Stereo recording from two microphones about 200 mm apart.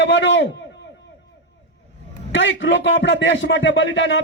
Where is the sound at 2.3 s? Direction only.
65° left (ahead or behind).